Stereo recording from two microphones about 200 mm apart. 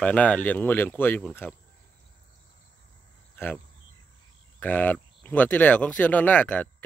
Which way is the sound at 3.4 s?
10° left (ahead or behind).